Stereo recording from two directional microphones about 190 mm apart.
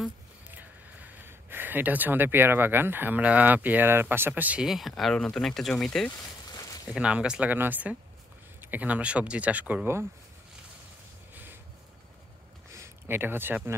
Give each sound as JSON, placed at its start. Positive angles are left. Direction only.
{"t": 0.0, "sound": "speech", "side_deg": -10}
{"t": 6.5, "sound": "a sound", "side_deg": 20}
{"t": 6.9, "sound": "speech", "side_deg": -5}
{"t": 12.7, "sound": "speech", "side_deg": -15}